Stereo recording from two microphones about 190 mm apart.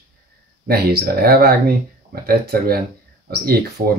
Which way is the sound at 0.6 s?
55° right (ahead or behind).